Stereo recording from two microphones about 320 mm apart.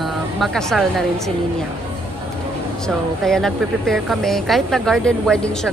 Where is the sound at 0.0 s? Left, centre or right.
Centre.